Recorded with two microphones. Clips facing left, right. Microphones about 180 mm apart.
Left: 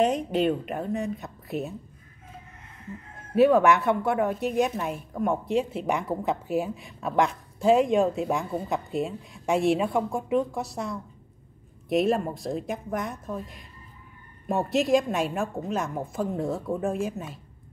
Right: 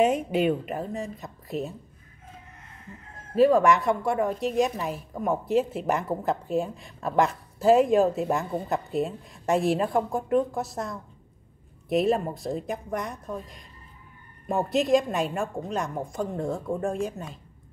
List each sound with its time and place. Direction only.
0.0 s a woman's voice: 5° right (ahead or behind)
3.3 s a woman's voice: 5° left (ahead or behind)